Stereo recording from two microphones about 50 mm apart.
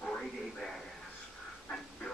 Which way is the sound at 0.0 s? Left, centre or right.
Centre.